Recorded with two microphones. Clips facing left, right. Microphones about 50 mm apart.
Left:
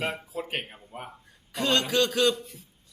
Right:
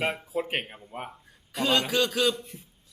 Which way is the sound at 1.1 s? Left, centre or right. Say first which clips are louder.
Right 1 dB; centre.